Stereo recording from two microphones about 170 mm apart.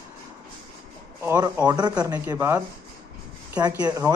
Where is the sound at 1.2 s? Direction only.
15° right (ahead or behind).